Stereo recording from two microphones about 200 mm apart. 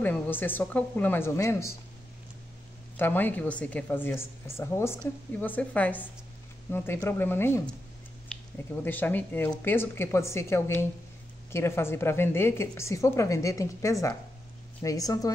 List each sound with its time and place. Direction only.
0.0 s a woman's voice: 10° left (ahead or behind)
3.0 s a woman's voice: 10° left (ahead or behind)
8.8 s a woman's voice: 10° left (ahead or behind)